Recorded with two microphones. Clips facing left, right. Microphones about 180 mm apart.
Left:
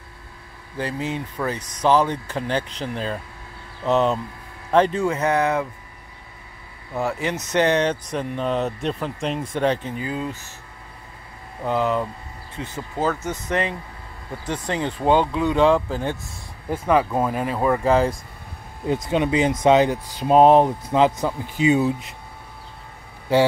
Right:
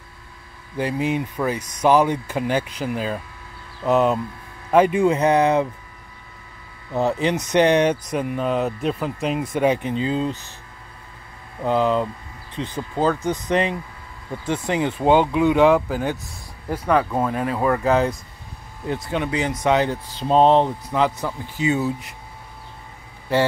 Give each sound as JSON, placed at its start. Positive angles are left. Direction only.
{"t": 0.7, "sound": "speech", "side_deg": -15}
{"t": 7.0, "sound": "speech", "side_deg": -20}
{"t": 11.6, "sound": "speech", "side_deg": -20}
{"t": 16.8, "sound": "speech", "side_deg": 5}
{"t": 19.0, "sound": "speech", "side_deg": 20}